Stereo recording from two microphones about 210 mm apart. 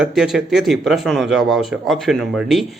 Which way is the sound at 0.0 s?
Centre (ahead or behind).